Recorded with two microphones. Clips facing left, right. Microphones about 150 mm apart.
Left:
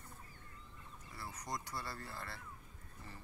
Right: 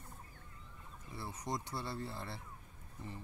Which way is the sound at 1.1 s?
25° right (ahead or behind).